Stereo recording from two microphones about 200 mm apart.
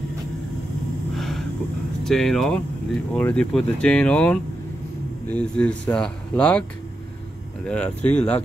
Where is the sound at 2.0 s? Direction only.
Centre (ahead or behind).